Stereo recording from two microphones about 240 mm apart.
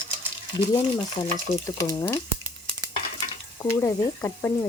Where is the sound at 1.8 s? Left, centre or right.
Centre.